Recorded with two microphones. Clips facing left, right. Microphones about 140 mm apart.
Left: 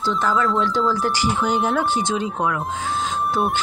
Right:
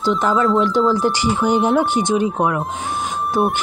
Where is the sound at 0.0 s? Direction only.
20° right (ahead or behind).